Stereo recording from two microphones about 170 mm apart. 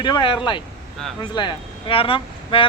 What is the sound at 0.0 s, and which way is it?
Speech, 25° left (ahead or behind).